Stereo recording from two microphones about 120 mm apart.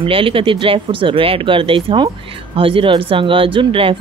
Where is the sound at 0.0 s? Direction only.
50° right (ahead or behind).